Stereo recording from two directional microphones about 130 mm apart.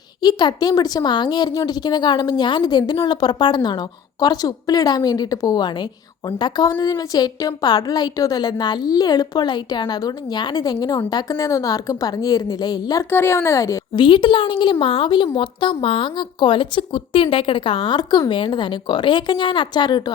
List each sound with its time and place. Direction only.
0.2 s a woman's voice: 35° left (ahead or behind)
13.1 s a woman's voice: 20° left (ahead or behind)
14.0 s a woman's voice: 40° left (ahead or behind)